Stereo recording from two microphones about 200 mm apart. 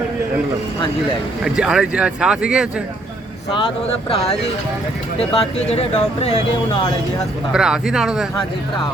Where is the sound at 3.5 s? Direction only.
25° left (ahead or behind).